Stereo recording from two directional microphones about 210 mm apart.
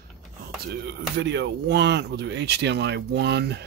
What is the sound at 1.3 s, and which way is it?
Speech, 55° right (ahead or behind).